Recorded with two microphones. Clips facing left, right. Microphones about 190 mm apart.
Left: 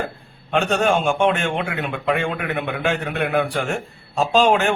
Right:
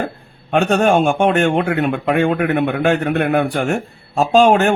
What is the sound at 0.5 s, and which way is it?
Speech, 50° right (ahead or behind).